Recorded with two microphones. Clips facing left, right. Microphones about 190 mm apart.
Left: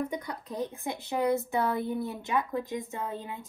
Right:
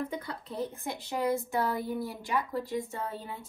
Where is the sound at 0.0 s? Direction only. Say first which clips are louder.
Left 2 dB; 15° left (ahead or behind).